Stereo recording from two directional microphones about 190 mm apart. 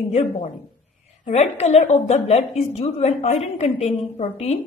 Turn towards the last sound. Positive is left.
turn(degrees=35)  # may be behind; listen again after turning